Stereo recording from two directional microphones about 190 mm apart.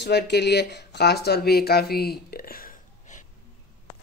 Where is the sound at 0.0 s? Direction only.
65° left (ahead or behind); by 3.3 s 45° left (ahead or behind).